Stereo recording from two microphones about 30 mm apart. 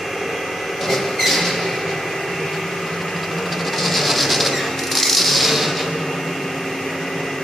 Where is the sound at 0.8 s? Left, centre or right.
Centre.